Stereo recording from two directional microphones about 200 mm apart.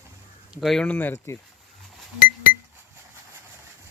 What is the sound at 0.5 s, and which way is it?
Speech, centre (ahead or behind).